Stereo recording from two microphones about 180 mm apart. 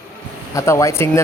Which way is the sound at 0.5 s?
15° left (ahead or behind).